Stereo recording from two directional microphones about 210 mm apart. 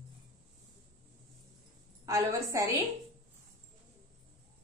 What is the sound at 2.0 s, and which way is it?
Speech, 15° right (ahead or behind).